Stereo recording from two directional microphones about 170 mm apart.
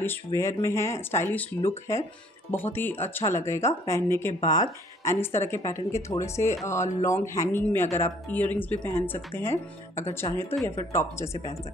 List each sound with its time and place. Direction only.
0.0 s speech: 15° left (ahead or behind)